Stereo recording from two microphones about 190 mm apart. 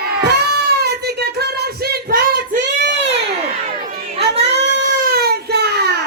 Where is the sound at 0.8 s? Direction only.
60° right (ahead or behind).